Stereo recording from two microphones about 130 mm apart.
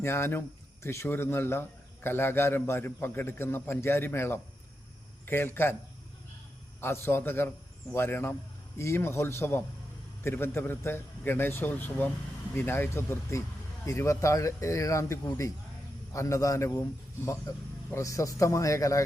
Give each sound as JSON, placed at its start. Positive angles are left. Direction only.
{"t": 0.0, "sound": "a man's voice", "side_deg": 20}
{"t": 6.8, "sound": "speech", "side_deg": 20}
{"t": 17.9, "sound": "speech", "side_deg": 25}